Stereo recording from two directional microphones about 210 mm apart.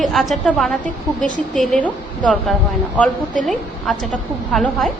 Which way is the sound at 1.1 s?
35° left (ahead or behind).